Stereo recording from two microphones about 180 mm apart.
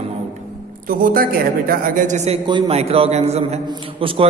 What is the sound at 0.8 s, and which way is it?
A man's voice, 50° right (ahead or behind).